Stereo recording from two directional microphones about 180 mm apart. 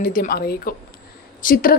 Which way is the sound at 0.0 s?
55° left (ahead or behind).